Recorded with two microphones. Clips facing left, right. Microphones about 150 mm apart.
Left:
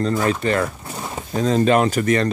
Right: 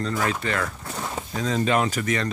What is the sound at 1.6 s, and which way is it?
Speech, 55° left (ahead or behind).